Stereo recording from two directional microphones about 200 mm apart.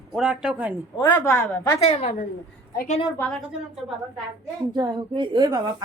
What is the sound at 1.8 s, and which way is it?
A woman's voice, 30° left (ahead or behind).